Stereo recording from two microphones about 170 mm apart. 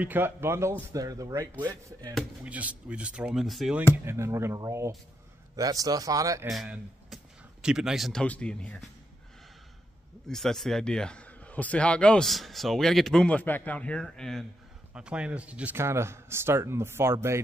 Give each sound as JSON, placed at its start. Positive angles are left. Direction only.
{"t": 0.0, "sound": "speech", "side_deg": -10}
{"t": 2.1, "sound": "speech", "side_deg": -10}
{"t": 4.0, "sound": "speech", "side_deg": -15}
{"t": 6.5, "sound": "a man's voice", "side_deg": 0}
{"t": 10.2, "sound": "a man's voice", "side_deg": 0}